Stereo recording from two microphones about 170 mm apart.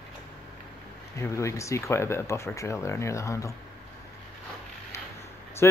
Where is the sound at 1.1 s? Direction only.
15° left (ahead or behind).